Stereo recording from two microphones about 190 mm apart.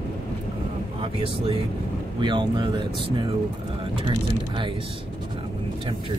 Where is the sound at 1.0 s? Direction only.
30° right (ahead or behind).